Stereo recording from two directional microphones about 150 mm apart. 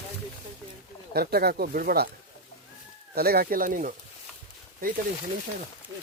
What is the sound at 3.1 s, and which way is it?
Speech, 90° right.